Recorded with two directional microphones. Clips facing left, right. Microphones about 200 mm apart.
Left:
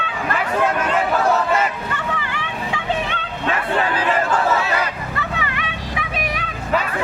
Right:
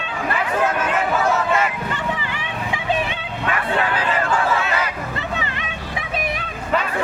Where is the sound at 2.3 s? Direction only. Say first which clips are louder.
Left 1 dB; 15° right (ahead or behind).